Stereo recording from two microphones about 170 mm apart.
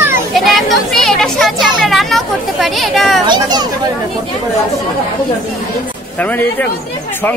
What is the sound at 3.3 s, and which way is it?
Speech, 25° right (ahead or behind).